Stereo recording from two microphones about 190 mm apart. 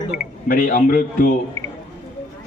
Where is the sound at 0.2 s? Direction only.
45° left (ahead or behind).